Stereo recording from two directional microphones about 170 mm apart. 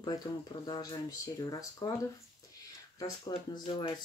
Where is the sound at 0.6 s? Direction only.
25° left (ahead or behind).